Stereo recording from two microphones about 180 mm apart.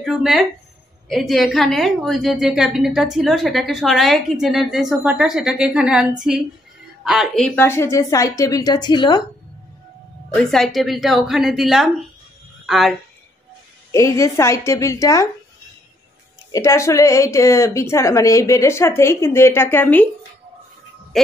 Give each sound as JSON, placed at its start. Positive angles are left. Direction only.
{"t": 0.0, "sound": "a woman's voice", "side_deg": 0}
{"t": 10.3, "sound": "a woman's voice", "side_deg": 5}
{"t": 13.9, "sound": "a woman's voice", "side_deg": 15}
{"t": 16.5, "sound": "a woman's voice", "side_deg": 15}